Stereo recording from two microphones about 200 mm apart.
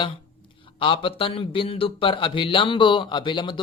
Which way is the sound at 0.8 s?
25° left (ahead or behind).